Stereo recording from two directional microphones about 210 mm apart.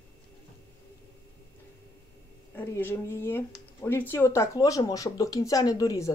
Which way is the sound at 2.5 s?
10° left (ahead or behind).